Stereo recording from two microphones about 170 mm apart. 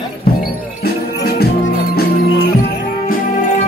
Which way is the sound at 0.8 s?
65° left (ahead or behind).